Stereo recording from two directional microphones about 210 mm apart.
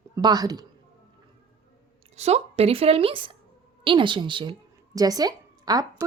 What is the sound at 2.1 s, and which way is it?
A woman's voice, 30° right (ahead or behind).